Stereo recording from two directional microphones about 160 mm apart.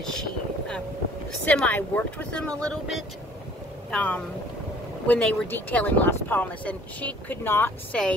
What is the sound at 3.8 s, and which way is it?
Speech, 10° left (ahead or behind).